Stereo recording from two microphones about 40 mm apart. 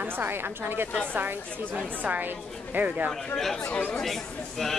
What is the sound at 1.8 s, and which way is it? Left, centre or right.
A woman's voice, right.